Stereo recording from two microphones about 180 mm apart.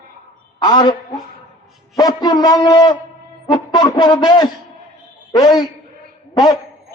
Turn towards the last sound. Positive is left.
turn(degrees=20)  # may be behind; listen again after turning